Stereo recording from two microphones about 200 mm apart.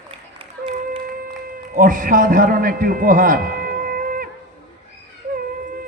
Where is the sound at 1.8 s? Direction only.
40° right (ahead or behind).